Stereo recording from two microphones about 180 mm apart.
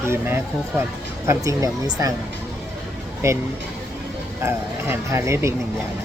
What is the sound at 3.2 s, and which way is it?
Speech, 15° right (ahead or behind).